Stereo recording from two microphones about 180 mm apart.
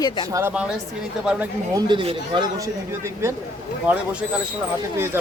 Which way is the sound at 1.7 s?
25° right (ahead or behind).